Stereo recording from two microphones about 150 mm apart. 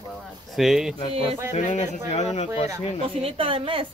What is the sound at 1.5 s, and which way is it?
Speech, 55° left (ahead or behind).